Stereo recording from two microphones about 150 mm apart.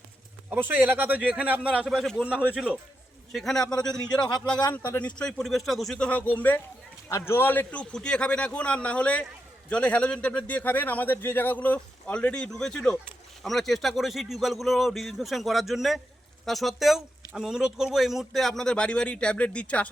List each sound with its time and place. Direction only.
0.5 s a man's voice: 10° right (ahead or behind)
4.2 s speech: 25° left (ahead or behind)
4.7 s a man's voice: 15° left (ahead or behind)